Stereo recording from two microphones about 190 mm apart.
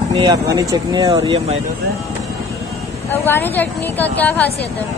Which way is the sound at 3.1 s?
10° left (ahead or behind).